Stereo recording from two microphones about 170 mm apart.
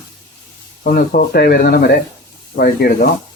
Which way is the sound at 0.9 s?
65° left (ahead or behind).